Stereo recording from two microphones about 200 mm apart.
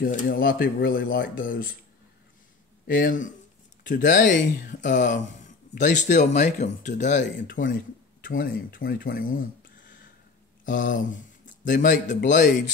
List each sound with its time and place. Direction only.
0.0 s speech: 45° left (ahead or behind)
2.9 s speech: 45° left (ahead or behind)
4.2 s speech: 65° left (ahead or behind)
4.6 s speech: 40° left (ahead or behind)
10.6 s a sound: 40° left (ahead or behind)
12.1 s speech: 40° left (ahead or behind)